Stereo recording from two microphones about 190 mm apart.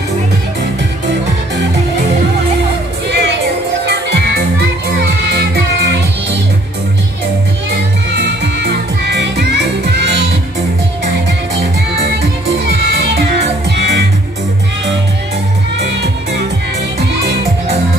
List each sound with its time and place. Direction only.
3.1 s music: 65° right (ahead or behind)
9.1 s music: 65° right (ahead or behind)
13.7 s music: 60° right (ahead or behind)